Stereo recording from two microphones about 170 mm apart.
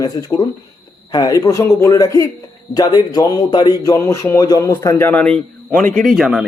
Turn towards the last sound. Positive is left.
turn(degrees=0)  # may be behind; listen again after turning